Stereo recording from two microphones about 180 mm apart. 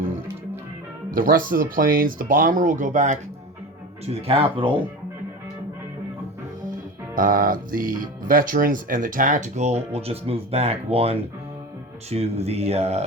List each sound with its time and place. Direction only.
1.1 s speech: 50° right (ahead or behind)
4.0 s speech: 30° right (ahead or behind)
7.2 s speech: 50° right (ahead or behind)